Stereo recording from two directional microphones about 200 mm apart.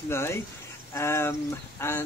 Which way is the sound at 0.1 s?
10° left (ahead or behind).